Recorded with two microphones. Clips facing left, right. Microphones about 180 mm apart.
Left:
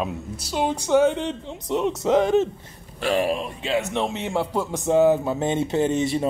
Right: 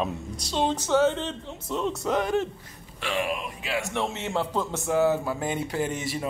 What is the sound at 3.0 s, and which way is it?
Speech, 40° left (ahead or behind).